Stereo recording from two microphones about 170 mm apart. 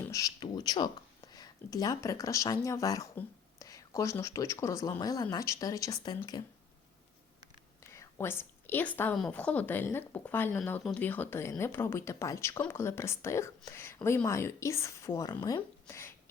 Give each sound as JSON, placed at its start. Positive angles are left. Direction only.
{"t": 0.0, "sound": "speech", "side_deg": 20}
{"t": 7.9, "sound": "a woman's voice", "side_deg": 15}